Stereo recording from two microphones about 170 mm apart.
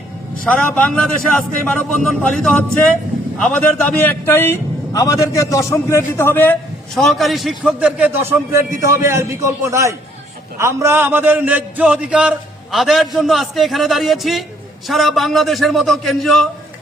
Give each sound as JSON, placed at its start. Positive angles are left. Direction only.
{"t": 0.4, "sound": "a man's voice", "side_deg": 5}
{"t": 6.9, "sound": "a man's voice", "side_deg": 0}